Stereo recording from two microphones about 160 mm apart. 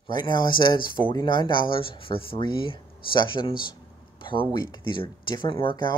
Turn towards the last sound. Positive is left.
turn(degrees=30)  # may be behind; listen again after turning